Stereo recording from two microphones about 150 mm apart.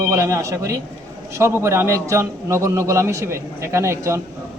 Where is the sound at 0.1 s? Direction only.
20° right (ahead or behind).